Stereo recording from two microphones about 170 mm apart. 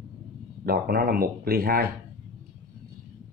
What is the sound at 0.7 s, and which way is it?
Speech, 60° right (ahead or behind).